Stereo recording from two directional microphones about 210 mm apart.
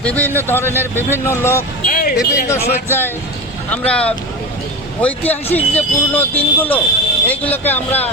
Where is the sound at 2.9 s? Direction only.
10° left (ahead or behind).